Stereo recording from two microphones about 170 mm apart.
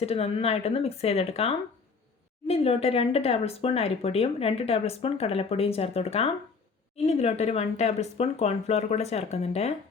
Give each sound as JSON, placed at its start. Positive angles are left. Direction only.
{"t": 0.0, "sound": "speech", "side_deg": 35}